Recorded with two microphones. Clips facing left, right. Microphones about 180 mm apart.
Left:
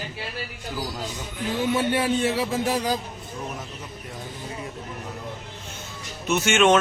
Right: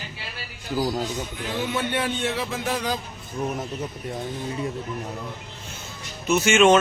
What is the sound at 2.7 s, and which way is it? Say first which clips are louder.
Speech: left 2 dB; 35° left (ahead or behind).